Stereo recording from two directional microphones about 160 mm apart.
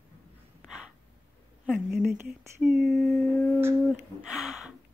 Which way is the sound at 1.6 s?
10° right (ahead or behind).